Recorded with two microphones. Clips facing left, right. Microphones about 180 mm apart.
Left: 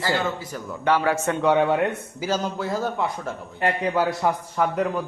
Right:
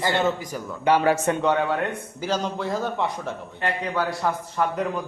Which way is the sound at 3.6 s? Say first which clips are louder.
Left 4 dB; 25° left (ahead or behind).